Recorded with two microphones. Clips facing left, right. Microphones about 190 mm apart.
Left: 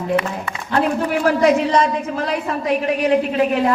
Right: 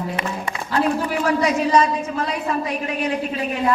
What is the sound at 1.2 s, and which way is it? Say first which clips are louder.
A woman's voice: left 5 dB; 60° left (ahead or behind).